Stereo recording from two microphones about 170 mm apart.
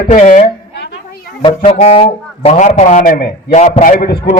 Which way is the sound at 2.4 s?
40° left (ahead or behind).